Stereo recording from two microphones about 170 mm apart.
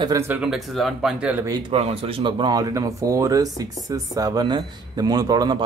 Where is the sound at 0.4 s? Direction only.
Centre (ahead or behind).